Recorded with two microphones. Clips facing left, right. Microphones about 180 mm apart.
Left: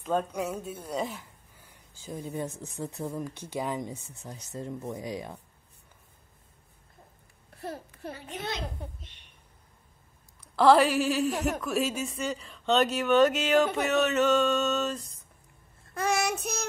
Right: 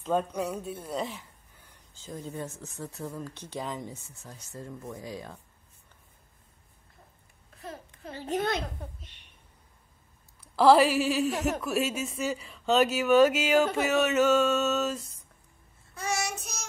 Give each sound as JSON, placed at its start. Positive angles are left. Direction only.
{"t": 0.3, "sound": "speech", "side_deg": 0}
{"t": 8.1, "sound": "a child's voice", "side_deg": -30}
{"t": 8.4, "sound": "a child's voice", "side_deg": -55}
{"t": 10.5, "sound": "speech", "side_deg": -5}
{"t": 15.9, "sound": "child singing", "side_deg": 55}